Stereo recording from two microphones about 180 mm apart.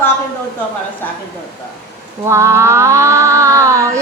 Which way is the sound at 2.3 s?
15° right (ahead or behind).